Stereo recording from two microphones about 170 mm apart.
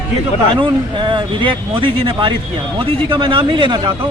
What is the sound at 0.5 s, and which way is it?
Speech, 30° right (ahead or behind).